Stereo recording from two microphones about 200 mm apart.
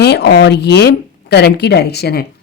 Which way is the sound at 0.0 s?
55° left (ahead or behind).